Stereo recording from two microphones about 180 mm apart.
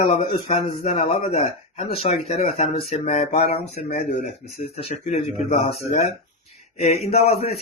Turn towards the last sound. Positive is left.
turn(degrees=35)  # may be behind; listen again after turning